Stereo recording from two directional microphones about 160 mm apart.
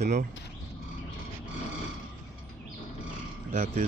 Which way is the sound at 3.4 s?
50° right (ahead or behind).